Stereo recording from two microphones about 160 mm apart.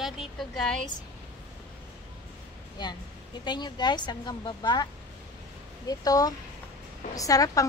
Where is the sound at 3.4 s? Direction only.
30° left (ahead or behind).